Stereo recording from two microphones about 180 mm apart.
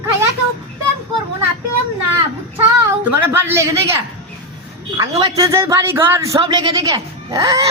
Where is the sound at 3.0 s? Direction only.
15° right (ahead or behind).